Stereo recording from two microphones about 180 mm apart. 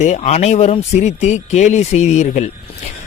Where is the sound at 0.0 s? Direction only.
40° left (ahead or behind).